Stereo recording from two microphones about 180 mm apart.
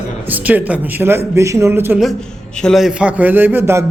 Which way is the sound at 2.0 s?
5° left (ahead or behind).